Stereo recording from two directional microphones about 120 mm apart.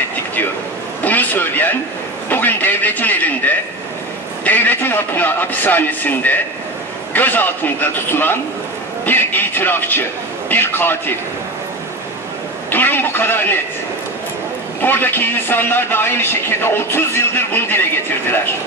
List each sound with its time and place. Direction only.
1.0 s a sound: 15° left (ahead or behind)
2.2 s a man's voice: 15° left (ahead or behind)
12.7 s a man's voice: 15° left (ahead or behind)
14.8 s a man's voice: 15° left (ahead or behind)